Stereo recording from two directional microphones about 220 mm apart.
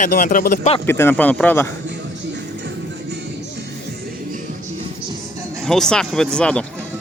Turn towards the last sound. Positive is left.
turn(degrees=5)  # may be behind; listen again after turning